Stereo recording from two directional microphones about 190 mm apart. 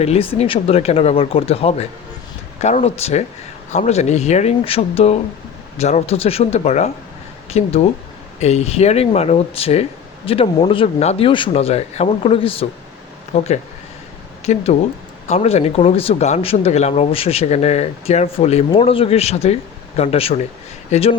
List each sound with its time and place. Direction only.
0.0 s speech: 30° left (ahead or behind)